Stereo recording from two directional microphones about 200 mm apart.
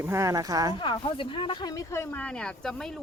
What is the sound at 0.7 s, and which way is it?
Speech, 25° left (ahead or behind).